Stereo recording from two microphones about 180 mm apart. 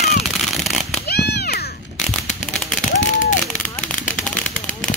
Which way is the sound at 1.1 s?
60° left (ahead or behind).